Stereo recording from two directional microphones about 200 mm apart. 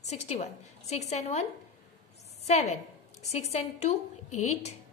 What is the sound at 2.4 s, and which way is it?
A woman's voice, 35° left (ahead or behind).